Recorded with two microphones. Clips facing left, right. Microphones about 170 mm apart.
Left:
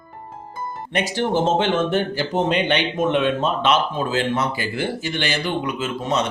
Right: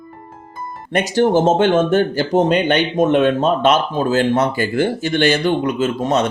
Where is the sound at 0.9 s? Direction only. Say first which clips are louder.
Right 7 dB; 45° right (ahead or behind).